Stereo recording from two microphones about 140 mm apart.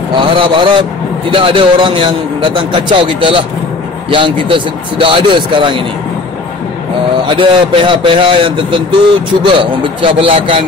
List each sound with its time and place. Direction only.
0.1 s a man's voice: 35° right (ahead or behind)
7.2 s a man's voice: 35° right (ahead or behind)